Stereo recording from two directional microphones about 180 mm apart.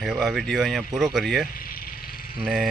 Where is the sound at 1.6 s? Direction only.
55° left (ahead or behind).